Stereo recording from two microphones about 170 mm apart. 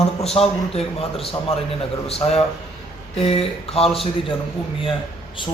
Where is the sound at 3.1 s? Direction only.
35° left (ahead or behind).